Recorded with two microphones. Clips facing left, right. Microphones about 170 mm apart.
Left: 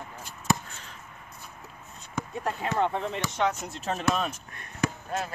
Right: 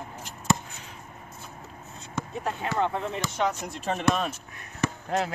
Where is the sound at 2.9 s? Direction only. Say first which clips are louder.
Even; 5° right (ahead or behind).